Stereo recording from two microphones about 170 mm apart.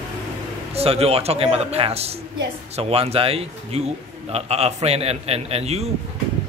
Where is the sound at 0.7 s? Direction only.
35° right (ahead or behind).